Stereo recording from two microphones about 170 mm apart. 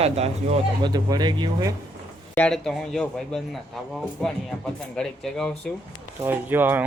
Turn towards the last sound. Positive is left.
turn(degrees=-10)  # may be behind; listen again after turning